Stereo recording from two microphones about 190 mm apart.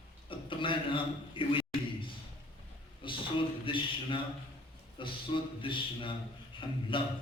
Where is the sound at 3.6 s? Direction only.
25° left (ahead or behind).